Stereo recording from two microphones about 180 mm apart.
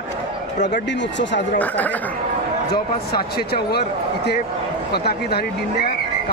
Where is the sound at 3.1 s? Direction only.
60° left (ahead or behind).